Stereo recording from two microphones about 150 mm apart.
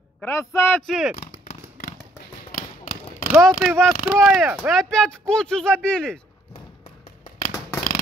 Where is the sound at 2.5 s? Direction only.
70° left (ahead or behind).